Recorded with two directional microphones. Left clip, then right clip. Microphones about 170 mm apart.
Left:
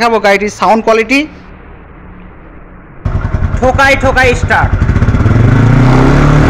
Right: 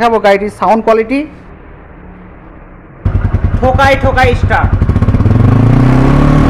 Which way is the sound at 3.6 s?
25° left (ahead or behind).